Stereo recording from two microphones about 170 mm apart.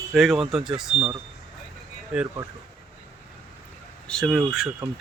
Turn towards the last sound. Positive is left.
turn(degrees=-5)  # may be behind; listen again after turning